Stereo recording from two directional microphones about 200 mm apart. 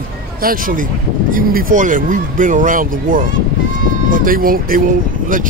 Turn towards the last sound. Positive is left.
turn(degrees=-45)  # may be behind; listen again after turning